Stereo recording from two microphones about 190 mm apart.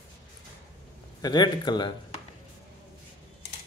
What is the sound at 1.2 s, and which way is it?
Speech, 20° left (ahead or behind).